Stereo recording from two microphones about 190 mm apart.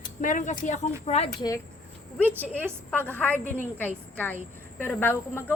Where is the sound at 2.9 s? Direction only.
10° left (ahead or behind).